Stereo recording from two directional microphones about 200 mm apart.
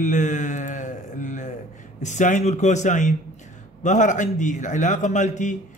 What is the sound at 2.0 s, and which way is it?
A man's voice, 35° left (ahead or behind).